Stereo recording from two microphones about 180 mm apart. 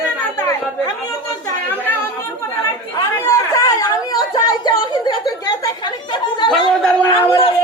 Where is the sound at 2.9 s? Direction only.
15° left (ahead or behind).